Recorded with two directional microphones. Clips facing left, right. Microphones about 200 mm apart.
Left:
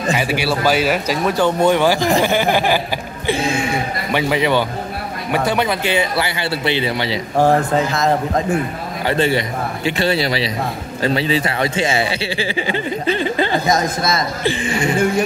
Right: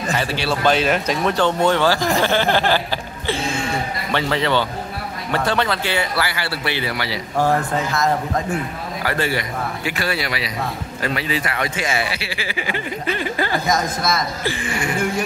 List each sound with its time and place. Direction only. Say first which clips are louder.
0.1 s speech: left 3 dB; 10° left (ahead or behind)
3.3 s a sound: left 4 dB; 15° left (ahead or behind)
5.3 s speech: left 2 dB; 15° left (ahead or behind)